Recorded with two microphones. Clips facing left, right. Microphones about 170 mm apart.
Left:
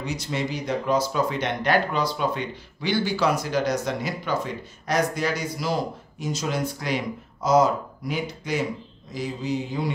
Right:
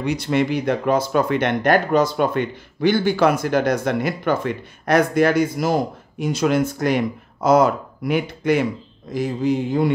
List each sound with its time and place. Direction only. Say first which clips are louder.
0.0 s speech: right 8 dB; 60° right (ahead or behind)